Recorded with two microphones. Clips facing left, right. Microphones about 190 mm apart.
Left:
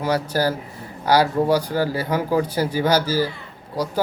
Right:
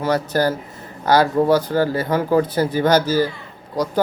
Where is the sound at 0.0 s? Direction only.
10° left (ahead or behind).